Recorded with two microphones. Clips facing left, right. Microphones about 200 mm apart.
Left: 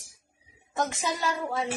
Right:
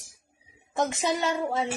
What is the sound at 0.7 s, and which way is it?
Speech, 25° right (ahead or behind).